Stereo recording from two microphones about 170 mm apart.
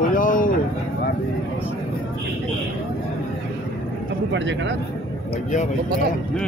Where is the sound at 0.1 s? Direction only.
50° left (ahead or behind).